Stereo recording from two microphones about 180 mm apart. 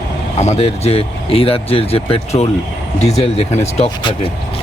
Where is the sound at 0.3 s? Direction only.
40° left (ahead or behind).